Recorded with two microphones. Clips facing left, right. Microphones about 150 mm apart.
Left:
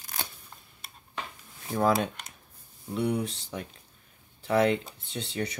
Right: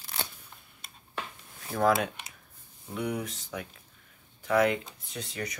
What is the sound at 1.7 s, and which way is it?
Speech, 30° left (ahead or behind).